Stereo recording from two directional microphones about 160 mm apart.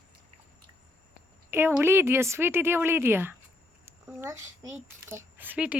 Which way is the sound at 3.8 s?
15° right (ahead or behind).